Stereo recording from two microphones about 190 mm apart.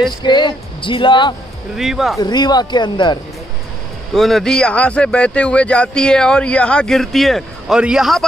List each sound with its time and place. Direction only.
0.2 s speech: 25° left (ahead or behind)
1.8 s speech: centre (ahead or behind)
2.1 s speech: 20° left (ahead or behind)
4.1 s speech: centre (ahead or behind)